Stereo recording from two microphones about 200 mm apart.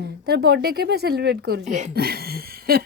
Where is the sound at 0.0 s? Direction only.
55° right (ahead or behind).